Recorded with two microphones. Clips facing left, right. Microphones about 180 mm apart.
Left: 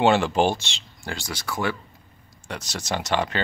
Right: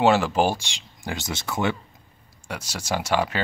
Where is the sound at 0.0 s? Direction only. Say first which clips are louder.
Even; 5° right (ahead or behind); by 1.8 s 20° right (ahead or behind).